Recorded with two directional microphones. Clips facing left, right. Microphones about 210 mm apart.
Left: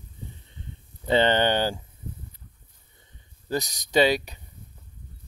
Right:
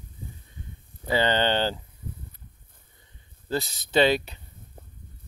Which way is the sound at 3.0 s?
15° left (ahead or behind).